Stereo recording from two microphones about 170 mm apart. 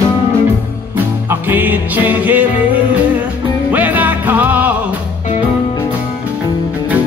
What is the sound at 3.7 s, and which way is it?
Music, 10° right (ahead or behind).